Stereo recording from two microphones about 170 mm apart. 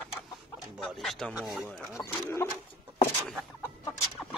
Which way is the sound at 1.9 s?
15° left (ahead or behind).